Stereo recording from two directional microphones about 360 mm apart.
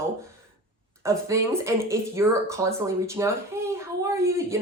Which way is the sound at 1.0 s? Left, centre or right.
Centre.